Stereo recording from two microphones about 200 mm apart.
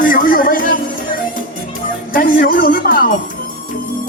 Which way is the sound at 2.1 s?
45° left (ahead or behind).